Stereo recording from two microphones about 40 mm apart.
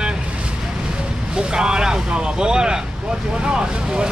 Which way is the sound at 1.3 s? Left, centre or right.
Right.